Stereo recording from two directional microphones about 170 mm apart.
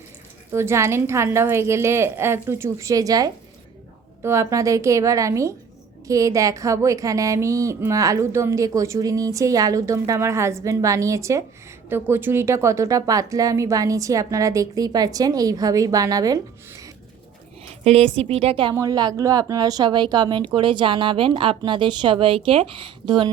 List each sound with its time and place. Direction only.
0.5 s a woman's voice: 15° right (ahead or behind)
17.8 s speech: 40° right (ahead or behind)
18.7 s a woman's voice: 20° right (ahead or behind)